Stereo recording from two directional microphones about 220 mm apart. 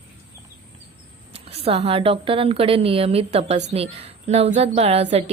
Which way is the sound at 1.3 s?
25° right (ahead or behind).